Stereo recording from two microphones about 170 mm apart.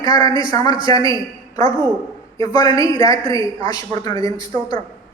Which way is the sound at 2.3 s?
25° left (ahead or behind).